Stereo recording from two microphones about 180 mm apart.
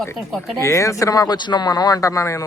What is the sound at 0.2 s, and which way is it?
Speech, centre (ahead or behind).